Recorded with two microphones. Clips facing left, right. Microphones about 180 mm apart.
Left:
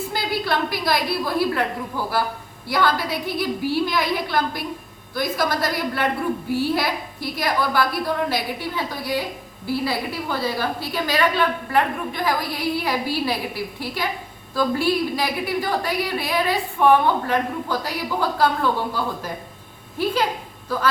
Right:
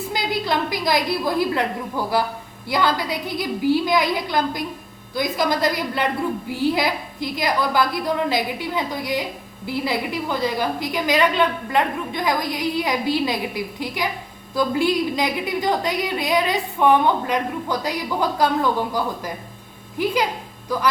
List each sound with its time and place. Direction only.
0.1 s a woman's voice: 15° right (ahead or behind)
2.6 s a woman's voice: 20° right (ahead or behind)